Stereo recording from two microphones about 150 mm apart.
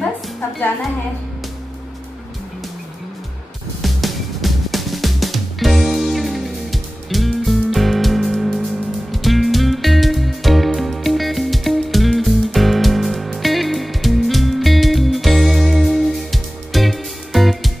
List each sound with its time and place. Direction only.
3.8 s music: centre (ahead or behind)